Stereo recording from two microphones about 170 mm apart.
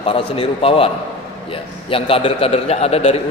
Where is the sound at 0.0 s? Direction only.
35° left (ahead or behind).